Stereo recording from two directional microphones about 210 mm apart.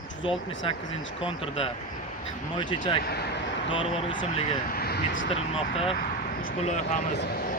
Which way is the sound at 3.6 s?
25° left (ahead or behind).